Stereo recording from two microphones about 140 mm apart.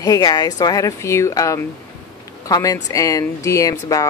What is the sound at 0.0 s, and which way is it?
Speech, 25° left (ahead or behind).